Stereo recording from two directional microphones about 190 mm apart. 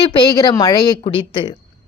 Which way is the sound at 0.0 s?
20° left (ahead or behind).